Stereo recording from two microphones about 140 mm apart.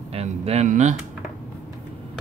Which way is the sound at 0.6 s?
60° right (ahead or behind).